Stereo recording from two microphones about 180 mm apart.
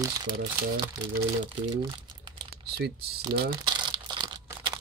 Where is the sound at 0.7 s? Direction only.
25° right (ahead or behind).